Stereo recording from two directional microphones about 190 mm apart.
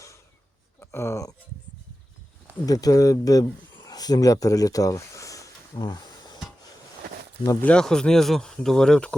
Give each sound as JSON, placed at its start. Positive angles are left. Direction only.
{"t": 0.8, "sound": "speech", "side_deg": 15}
{"t": 2.6, "sound": "speech", "side_deg": 20}
{"t": 3.8, "sound": "a sound", "side_deg": 20}
{"t": 7.6, "sound": "speech", "side_deg": 5}